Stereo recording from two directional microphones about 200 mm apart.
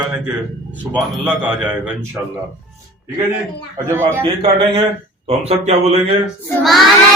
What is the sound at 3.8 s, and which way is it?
Speech, 10° right (ahead or behind).